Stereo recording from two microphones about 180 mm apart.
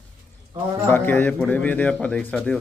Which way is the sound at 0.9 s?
10° left (ahead or behind).